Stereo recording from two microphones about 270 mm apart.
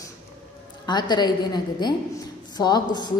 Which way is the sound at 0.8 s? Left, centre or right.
Centre.